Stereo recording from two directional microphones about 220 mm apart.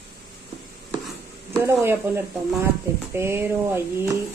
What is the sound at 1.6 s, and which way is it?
Speech, 10° right (ahead or behind).